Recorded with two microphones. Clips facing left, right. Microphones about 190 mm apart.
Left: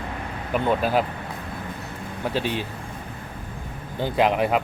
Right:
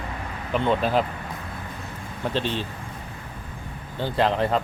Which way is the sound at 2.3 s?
10° left (ahead or behind).